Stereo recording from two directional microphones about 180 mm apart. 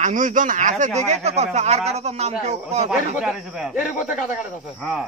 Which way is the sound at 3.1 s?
5° right (ahead or behind).